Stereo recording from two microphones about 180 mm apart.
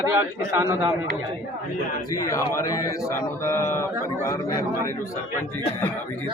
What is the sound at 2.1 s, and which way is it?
A man's voice, 20° left (ahead or behind).